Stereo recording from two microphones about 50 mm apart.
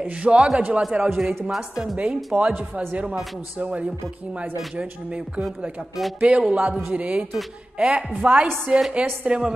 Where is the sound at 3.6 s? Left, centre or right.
Right.